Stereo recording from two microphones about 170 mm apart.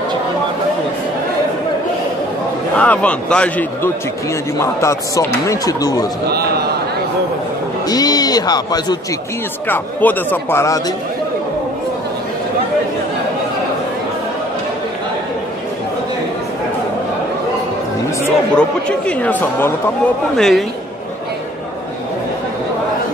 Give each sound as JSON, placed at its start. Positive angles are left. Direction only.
{"t": 2.7, "sound": "speech", "side_deg": 10}
{"t": 6.3, "sound": "a man's voice", "side_deg": -70}
{"t": 7.9, "sound": "a man's voice", "side_deg": 25}
{"t": 9.7, "sound": "speech", "side_deg": 10}
{"t": 18.2, "sound": "a woman's voice", "side_deg": 5}